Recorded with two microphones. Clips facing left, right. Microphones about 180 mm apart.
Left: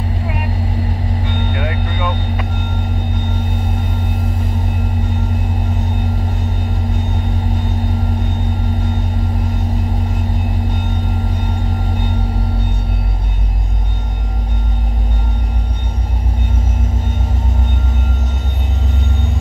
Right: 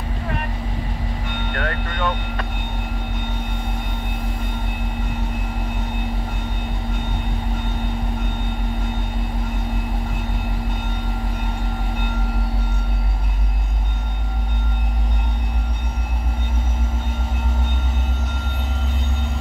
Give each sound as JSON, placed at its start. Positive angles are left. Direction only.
{"t": 1.5, "sound": "speech", "side_deg": 10}